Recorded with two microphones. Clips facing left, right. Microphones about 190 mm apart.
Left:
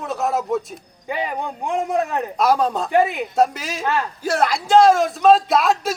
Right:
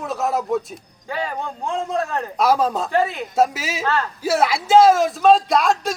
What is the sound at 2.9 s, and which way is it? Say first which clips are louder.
Speech: left 3 dB; 15° left (ahead or behind).